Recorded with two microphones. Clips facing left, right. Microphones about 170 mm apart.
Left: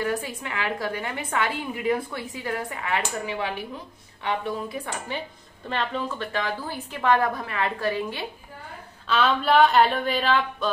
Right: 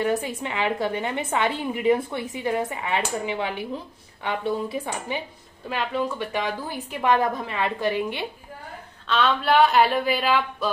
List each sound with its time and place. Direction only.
0.0 s a woman's voice: 20° right (ahead or behind)
9.0 s a woman's voice: centre (ahead or behind)